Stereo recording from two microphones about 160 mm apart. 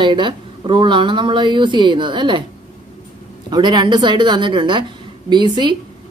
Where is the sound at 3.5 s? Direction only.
25° right (ahead or behind).